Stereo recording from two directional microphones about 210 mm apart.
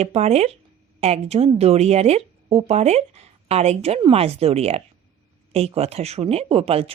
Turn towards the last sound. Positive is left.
turn(degrees=-30)  # may be behind; listen again after turning